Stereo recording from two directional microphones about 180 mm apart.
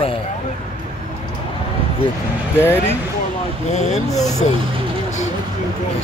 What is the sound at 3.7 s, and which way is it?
Speech, 40° left (ahead or behind).